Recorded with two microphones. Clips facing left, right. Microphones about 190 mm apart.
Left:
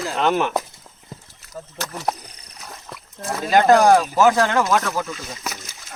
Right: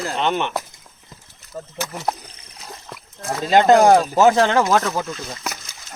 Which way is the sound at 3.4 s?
25° right (ahead or behind).